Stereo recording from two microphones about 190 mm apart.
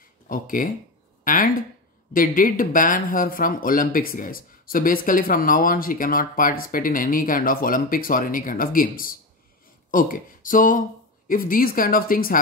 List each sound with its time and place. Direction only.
0.3 s speech: 45° left (ahead or behind)